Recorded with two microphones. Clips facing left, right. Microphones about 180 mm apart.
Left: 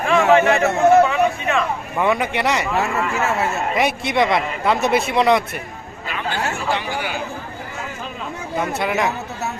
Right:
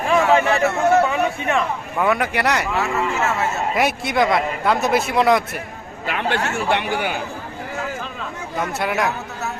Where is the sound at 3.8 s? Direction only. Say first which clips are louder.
Even; centre (ahead or behind).